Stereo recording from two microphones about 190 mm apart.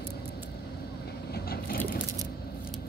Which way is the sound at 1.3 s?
50° left (ahead or behind).